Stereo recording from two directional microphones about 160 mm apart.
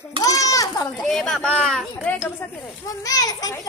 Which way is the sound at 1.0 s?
Centre (ahead or behind).